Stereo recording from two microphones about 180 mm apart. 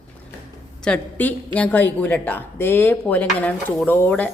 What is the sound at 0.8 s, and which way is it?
A woman's voice, 5° left (ahead or behind).